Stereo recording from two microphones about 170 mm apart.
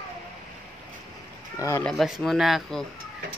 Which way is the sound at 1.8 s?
Centre (ahead or behind).